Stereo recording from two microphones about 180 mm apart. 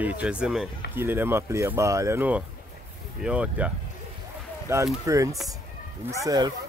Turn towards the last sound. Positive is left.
turn(degrees=-20)  # may be behind; listen again after turning